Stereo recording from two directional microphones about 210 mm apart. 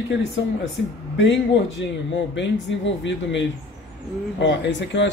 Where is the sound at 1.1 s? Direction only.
60° left (ahead or behind).